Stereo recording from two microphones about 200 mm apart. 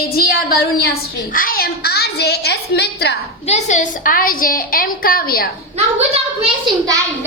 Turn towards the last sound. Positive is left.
turn(degrees=-25)  # may be behind; listen again after turning